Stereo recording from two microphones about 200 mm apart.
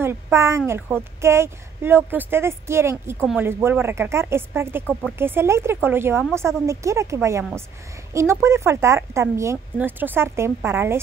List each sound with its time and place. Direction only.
0.0 s a woman's voice: 10° right (ahead or behind)